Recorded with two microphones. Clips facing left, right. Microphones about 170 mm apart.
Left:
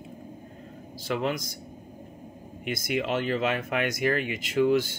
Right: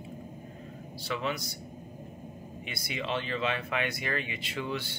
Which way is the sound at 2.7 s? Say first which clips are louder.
Left 7 dB; 45° left (ahead or behind).